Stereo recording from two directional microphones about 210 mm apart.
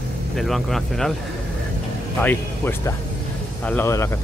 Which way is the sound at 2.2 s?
10° left (ahead or behind).